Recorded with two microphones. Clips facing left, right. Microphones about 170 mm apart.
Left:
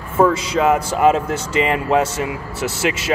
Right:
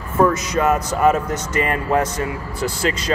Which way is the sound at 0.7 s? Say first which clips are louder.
Left 2 dB; 25° left (ahead or behind).